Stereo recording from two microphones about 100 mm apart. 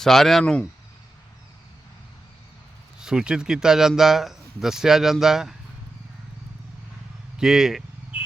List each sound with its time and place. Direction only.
0.0 s speech: centre (ahead or behind)
3.0 s speech: 5° right (ahead or behind)
7.3 s speech: 5° right (ahead or behind)
8.1 s a sound: 15° right (ahead or behind)